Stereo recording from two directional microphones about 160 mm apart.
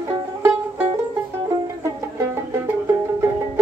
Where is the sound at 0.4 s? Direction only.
15° right (ahead or behind).